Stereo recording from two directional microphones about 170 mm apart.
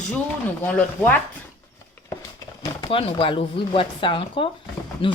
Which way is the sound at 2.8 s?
35° left (ahead or behind).